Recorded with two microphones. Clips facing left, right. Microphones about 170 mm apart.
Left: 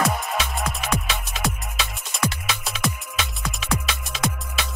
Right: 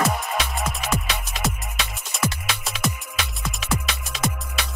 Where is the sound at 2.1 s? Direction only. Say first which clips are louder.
Even; centre (ahead or behind).